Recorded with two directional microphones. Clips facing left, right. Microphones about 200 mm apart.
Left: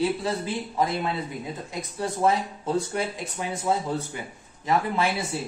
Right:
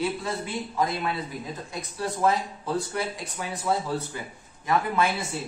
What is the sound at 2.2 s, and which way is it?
Speech, 25° left (ahead or behind).